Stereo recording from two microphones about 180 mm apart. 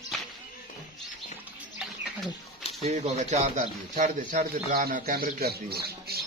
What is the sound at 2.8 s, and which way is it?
A man's voice, 35° right (ahead or behind).